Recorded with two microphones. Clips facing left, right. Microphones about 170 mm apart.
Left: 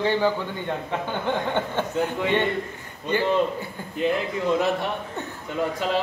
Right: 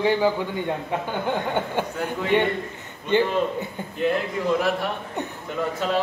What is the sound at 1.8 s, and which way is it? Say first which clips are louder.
A man's voice: left 2 dB; 10° right (ahead or behind).